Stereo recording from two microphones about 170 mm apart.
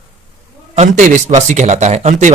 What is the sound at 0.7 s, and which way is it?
A man's voice, 45° right (ahead or behind).